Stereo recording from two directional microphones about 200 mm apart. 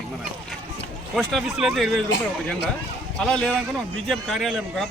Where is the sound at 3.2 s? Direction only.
5° left (ahead or behind).